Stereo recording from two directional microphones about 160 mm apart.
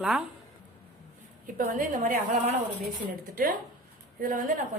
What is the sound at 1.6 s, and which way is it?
Speech, 60° right (ahead or behind).